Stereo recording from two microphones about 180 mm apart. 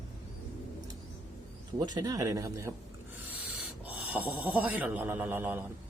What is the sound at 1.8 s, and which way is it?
Speech, 20° right (ahead or behind).